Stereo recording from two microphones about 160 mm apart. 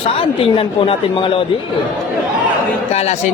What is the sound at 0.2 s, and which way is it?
Speech, 35° left (ahead or behind).